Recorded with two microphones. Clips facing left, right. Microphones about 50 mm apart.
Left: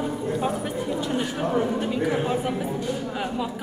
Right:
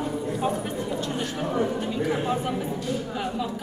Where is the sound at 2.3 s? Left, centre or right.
Centre.